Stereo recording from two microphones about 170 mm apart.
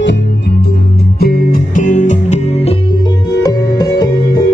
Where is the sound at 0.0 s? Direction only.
85° left.